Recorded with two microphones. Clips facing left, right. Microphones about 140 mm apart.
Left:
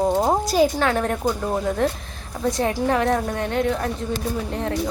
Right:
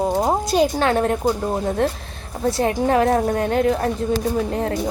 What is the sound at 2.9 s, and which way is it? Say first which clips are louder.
A woman's voice: right 5 dB; 35° right (ahead or behind).